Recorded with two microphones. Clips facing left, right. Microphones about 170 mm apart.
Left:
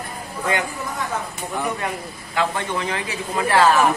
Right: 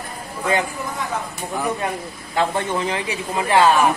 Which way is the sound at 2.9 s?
20° right (ahead or behind).